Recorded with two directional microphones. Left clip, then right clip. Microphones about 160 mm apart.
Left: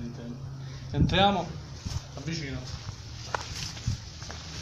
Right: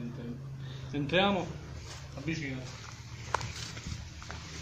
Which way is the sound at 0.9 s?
30° left (ahead or behind).